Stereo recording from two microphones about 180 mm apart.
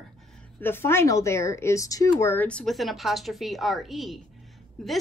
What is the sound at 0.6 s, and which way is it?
A woman's voice, 10° left (ahead or behind).